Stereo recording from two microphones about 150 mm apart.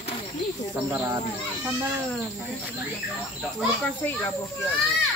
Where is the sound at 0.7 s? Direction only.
20° right (ahead or behind).